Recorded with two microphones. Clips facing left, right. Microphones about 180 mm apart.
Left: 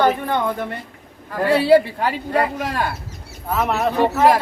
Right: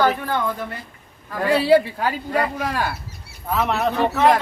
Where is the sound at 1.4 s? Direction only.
Centre (ahead or behind).